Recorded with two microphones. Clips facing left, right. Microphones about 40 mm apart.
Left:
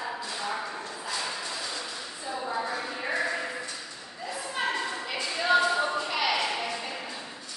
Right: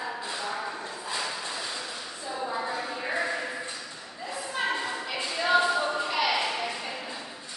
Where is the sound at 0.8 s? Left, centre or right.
Centre.